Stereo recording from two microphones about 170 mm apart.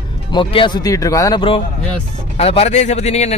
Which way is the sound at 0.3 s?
30° left (ahead or behind).